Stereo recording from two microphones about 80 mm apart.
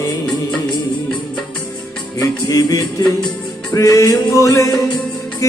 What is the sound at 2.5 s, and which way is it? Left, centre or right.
Singing, left.